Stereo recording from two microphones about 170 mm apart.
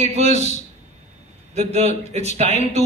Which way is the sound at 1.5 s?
40° right (ahead or behind).